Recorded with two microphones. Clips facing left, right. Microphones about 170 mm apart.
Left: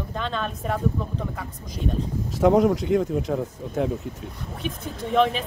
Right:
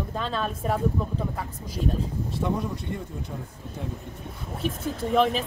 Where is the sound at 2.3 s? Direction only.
90° left.